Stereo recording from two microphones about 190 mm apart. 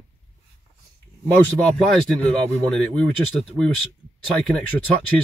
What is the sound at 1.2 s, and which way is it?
Speech, 5° left (ahead or behind).